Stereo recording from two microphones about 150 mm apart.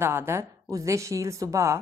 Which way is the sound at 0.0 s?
15° right (ahead or behind).